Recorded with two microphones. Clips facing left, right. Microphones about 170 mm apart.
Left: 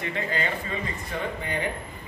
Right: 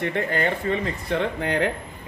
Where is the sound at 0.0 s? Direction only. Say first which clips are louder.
Right 5 dB; 55° right (ahead or behind).